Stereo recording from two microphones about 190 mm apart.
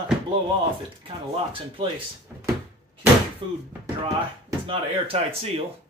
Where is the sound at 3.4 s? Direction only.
25° right (ahead or behind).